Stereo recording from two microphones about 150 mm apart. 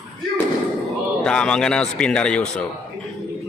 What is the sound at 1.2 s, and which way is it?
Speech, 5° left (ahead or behind).